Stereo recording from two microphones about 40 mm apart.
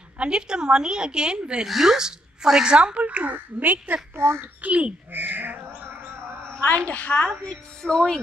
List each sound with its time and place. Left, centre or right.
0.2 s a woman's voice: right
1.7 s speech: centre
3.0 s a child's voice: right
4.1 s a child's voice: right
4.4 s a child's voice: right
6.9 s a woman's voice: left
7.8 s speech: centre